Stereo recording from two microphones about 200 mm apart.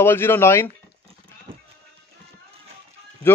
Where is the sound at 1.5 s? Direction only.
25° right (ahead or behind).